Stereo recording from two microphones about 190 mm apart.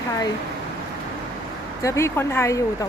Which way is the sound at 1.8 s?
15° left (ahead or behind).